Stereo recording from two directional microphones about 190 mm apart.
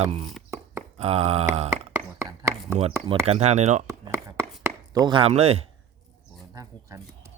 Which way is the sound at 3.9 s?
15° right (ahead or behind).